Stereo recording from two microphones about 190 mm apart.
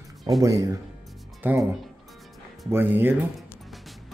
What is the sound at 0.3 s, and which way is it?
Speech, 20° right (ahead or behind).